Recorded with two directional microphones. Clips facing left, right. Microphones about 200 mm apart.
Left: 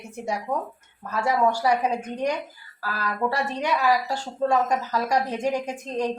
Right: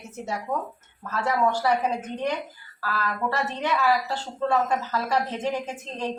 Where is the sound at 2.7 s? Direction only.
15° left (ahead or behind).